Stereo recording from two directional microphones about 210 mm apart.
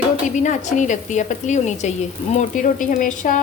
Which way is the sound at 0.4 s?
35° left (ahead or behind).